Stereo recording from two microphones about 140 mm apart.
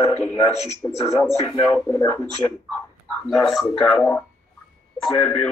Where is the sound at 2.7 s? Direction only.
5° left (ahead or behind).